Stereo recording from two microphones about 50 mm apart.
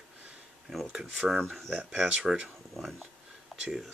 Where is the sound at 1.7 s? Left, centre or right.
Right.